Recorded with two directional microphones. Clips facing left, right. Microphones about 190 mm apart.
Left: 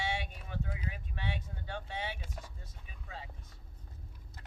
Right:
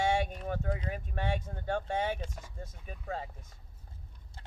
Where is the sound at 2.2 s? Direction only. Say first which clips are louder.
Right 5 dB; 5° left (ahead or behind).